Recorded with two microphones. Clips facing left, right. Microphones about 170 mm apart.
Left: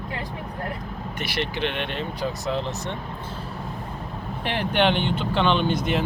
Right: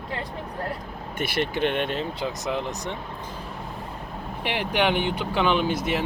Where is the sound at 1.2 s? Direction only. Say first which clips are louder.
Right 3 dB; 50° right (ahead or behind).